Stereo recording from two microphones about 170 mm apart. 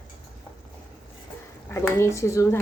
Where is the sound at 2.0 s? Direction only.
15° left (ahead or behind).